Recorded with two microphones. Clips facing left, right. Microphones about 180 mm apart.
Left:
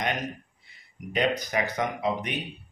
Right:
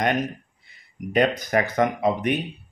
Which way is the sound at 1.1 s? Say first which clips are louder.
Right 5 dB; 50° right (ahead or behind).